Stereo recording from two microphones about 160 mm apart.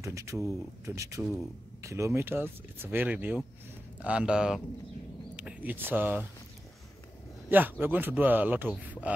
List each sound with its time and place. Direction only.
0.0 s speech: 20° right (ahead or behind)
7.4 s speech: 10° right (ahead or behind)